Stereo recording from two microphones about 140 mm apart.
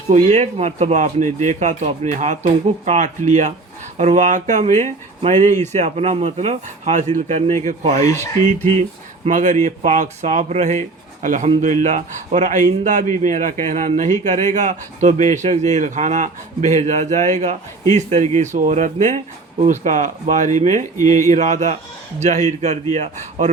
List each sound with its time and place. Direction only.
0.1 s speech: 55° right (ahead or behind)
9.2 s a man's voice: 60° right (ahead or behind)